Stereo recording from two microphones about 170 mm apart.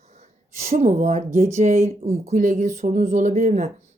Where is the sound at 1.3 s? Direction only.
45° right (ahead or behind).